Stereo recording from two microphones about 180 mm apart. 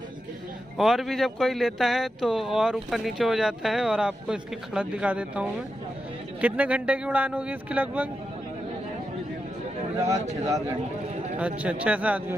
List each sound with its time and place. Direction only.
0.7 s a man's voice: centre (ahead or behind)
9.9 s a man's voice: 15° right (ahead or behind)
11.3 s a man's voice: 5° right (ahead or behind)